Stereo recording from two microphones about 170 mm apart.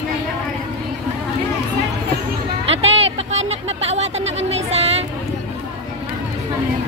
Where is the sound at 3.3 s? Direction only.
40° right (ahead or behind).